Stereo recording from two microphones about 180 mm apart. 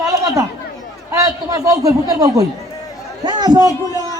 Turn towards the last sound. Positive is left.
turn(degrees=-20)  # may be behind; listen again after turning